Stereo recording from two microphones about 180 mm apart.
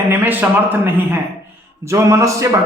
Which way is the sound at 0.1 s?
10° right (ahead or behind).